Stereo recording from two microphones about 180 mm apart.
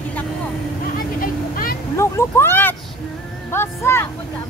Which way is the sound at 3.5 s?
15° left (ahead or behind).